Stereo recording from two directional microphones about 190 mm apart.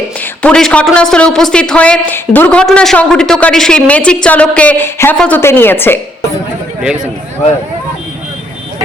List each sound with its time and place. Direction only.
0.4 s a man's voice: 5° left (ahead or behind)